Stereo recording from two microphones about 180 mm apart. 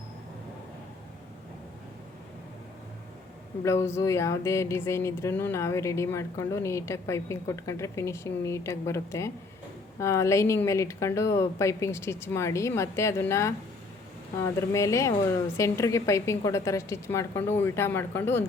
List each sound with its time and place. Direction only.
3.6 s speech: 15° left (ahead or behind)